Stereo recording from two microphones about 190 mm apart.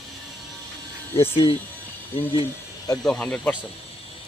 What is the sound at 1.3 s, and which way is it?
Speech, 30° left (ahead or behind).